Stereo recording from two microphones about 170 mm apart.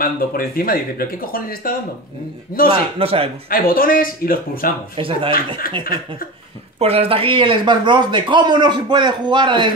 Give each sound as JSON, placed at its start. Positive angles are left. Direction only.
{"t": 0.0, "sound": "speech", "side_deg": 60}
{"t": 3.0, "sound": "speech", "side_deg": -35}
{"t": 3.4, "sound": "speech", "side_deg": 60}
{"t": 4.9, "sound": "speech", "side_deg": -30}
{"t": 6.8, "sound": "speech", "side_deg": -35}